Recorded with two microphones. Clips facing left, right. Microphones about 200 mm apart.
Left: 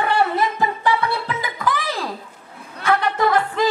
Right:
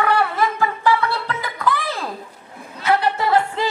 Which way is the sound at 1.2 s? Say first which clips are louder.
Even; 10° left (ahead or behind).